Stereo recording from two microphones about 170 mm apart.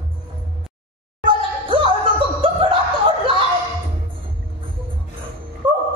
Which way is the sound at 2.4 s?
35° right (ahead or behind).